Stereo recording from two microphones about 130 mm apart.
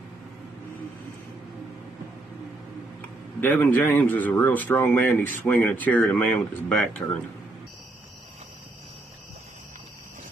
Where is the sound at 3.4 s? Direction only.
15° left (ahead or behind).